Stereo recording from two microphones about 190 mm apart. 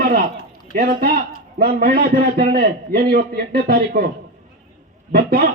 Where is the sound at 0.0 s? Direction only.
50° right (ahead or behind).